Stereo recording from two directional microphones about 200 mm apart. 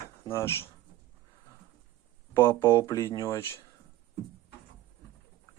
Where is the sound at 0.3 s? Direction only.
10° left (ahead or behind).